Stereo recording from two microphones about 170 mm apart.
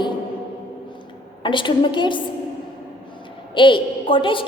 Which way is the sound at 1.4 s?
30° left (ahead or behind).